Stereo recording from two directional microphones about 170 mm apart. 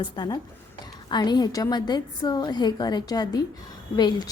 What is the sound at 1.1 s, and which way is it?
A woman's voice, 25° left (ahead or behind).